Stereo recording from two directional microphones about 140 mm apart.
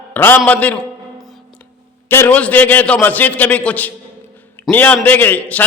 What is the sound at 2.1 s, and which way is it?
A man's voice, 15° left (ahead or behind).